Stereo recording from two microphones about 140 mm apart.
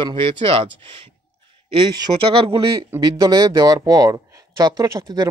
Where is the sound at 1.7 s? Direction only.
30° right (ahead or behind).